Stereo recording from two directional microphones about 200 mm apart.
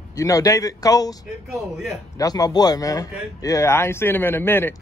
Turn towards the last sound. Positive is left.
turn(degrees=10)  # may be behind; listen again after turning